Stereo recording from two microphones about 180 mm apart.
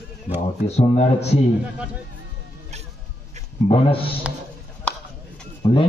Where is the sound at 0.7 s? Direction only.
35° left (ahead or behind).